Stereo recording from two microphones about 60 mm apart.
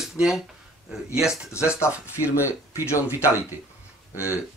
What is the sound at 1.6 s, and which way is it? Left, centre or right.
Speech, left.